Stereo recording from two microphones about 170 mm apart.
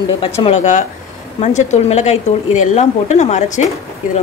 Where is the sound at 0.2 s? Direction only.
35° left (ahead or behind).